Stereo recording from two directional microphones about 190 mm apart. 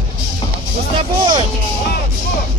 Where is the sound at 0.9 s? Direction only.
25° right (ahead or behind).